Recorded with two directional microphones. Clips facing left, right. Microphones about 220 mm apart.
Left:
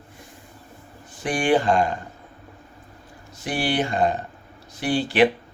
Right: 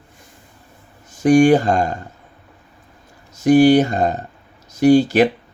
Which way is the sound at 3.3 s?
45° right (ahead or behind).